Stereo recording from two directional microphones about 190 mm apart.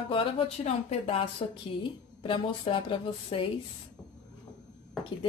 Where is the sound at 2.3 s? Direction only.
25° left (ahead or behind).